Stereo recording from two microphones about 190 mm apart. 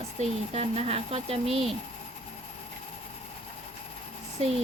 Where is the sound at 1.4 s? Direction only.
Centre (ahead or behind).